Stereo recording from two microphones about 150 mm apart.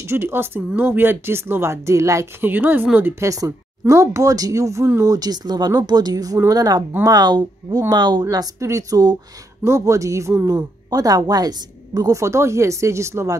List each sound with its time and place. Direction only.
0.0 s speech: 15° right (ahead or behind)